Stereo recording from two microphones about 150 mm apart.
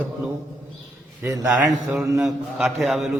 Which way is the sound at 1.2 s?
20° right (ahead or behind).